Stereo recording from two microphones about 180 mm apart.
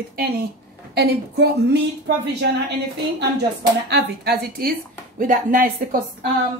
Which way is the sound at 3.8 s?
65° right (ahead or behind).